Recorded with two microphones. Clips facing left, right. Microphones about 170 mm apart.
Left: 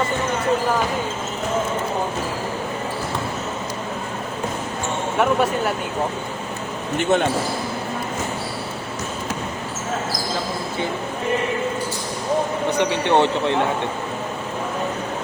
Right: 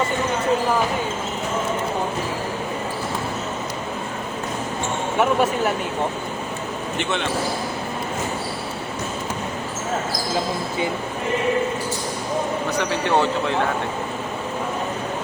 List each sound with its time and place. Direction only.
5.1 s speech: centre (ahead or behind)
7.0 s speech: 45° left (ahead or behind)
12.8 s speech: 20° left (ahead or behind)